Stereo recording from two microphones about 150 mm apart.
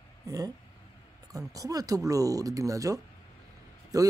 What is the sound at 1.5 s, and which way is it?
Speech, 25° right (ahead or behind).